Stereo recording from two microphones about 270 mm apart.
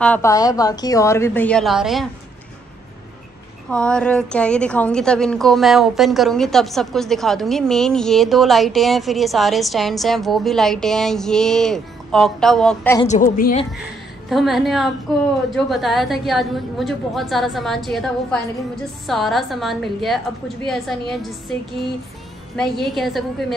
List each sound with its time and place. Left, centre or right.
0.0 s a woman's voice: centre
3.7 s a woman's voice: centre
13.1 s a woman's voice: left
14.3 s a woman's voice: centre
22.8 s a woman's voice: centre